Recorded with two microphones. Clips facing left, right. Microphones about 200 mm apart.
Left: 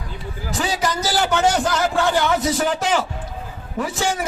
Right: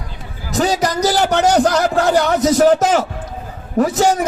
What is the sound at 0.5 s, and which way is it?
A man's voice, 40° right (ahead or behind).